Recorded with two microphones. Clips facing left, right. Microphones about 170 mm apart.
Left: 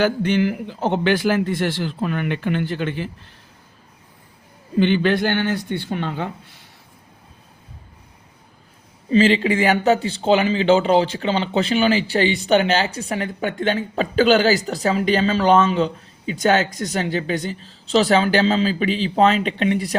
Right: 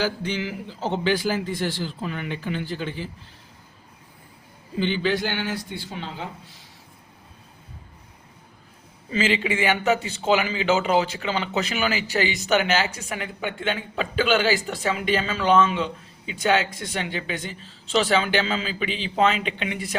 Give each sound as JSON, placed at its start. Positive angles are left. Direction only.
{"t": 0.0, "sound": "a man's voice", "side_deg": 60}
{"t": 4.8, "sound": "a man's voice", "side_deg": 55}
{"t": 9.0, "sound": "speech", "side_deg": 35}